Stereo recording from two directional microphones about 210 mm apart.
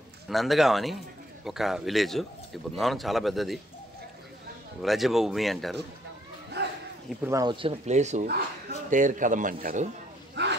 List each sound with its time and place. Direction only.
0.3 s speech: centre (ahead or behind)
4.8 s speech: centre (ahead or behind)
6.6 s bow-wow: 55° right (ahead or behind)
7.2 s a man's voice: 20° right (ahead or behind); by 9.8 s 40° right (ahead or behind)
10.4 s dog: 55° right (ahead or behind)